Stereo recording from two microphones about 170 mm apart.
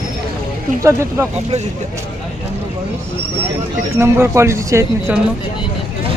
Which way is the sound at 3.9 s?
15° right (ahead or behind).